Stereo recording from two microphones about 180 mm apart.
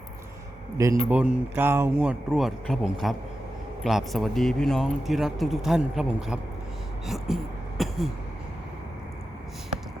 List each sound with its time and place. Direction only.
0.8 s speech: 15° right (ahead or behind)
1.1 s speech: 5° right (ahead or behind)
7.8 s a sound: centre (ahead or behind)